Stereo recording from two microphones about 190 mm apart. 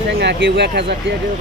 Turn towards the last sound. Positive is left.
turn(degrees=-65)  # may be behind; listen again after turning